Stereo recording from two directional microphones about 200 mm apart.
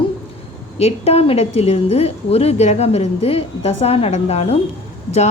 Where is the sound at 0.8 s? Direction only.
30° left (ahead or behind).